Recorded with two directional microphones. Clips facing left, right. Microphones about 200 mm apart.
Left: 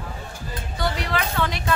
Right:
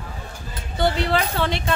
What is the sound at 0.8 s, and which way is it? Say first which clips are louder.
Speech: right 5 dB; 30° right (ahead or behind).